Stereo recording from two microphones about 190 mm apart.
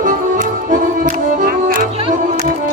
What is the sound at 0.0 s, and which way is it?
Music, 45° right (ahead or behind).